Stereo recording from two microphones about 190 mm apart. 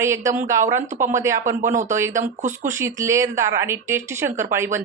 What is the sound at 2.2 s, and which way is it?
Speech, 40° right (ahead or behind).